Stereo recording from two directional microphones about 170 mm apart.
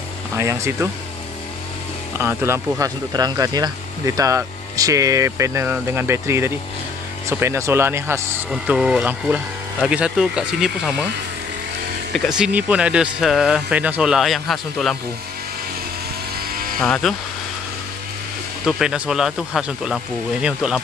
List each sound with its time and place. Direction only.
0.4 s speech: 15° right (ahead or behind)
2.1 s speech: 15° right (ahead or behind)
8.5 s speech: 5° right (ahead or behind)
12.1 s speech: centre (ahead or behind)
16.8 s speech: 5° left (ahead or behind)
18.7 s speech: 5° right (ahead or behind)